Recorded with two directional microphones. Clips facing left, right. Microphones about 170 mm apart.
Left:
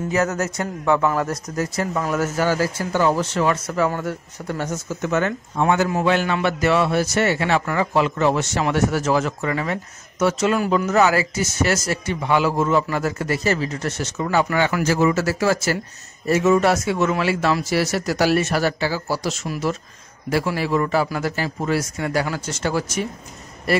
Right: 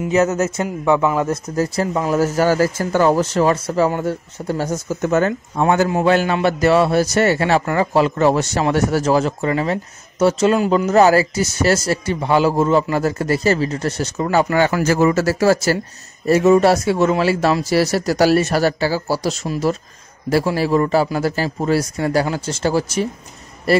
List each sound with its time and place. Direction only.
0.1 s speech: 20° right (ahead or behind)
1.6 s speech: 30° right (ahead or behind)
14.9 s speech: 45° right (ahead or behind)